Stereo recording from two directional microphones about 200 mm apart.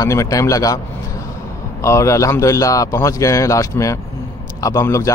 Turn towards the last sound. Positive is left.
turn(degrees=15)  # may be behind; listen again after turning